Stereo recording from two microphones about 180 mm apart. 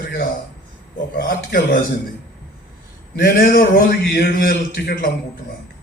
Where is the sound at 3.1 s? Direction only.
60° left (ahead or behind).